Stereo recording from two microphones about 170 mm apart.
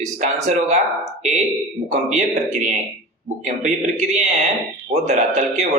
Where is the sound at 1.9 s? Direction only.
45° right (ahead or behind).